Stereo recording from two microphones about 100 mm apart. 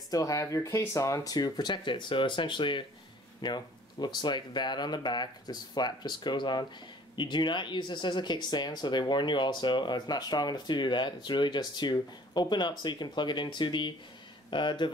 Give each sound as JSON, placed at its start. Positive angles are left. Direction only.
{"t": 0.1, "sound": "speech", "side_deg": 35}